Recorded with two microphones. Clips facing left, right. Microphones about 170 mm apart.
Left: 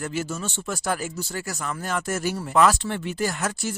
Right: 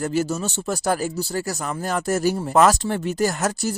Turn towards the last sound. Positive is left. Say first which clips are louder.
# right 5 dB
turn(degrees=-40)  # may be behind; listen again after turning